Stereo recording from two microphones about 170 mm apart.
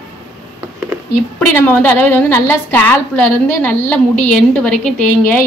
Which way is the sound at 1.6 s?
15° left (ahead or behind).